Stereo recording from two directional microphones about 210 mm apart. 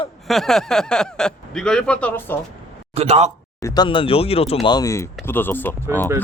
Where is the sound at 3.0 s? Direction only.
30° right (ahead or behind).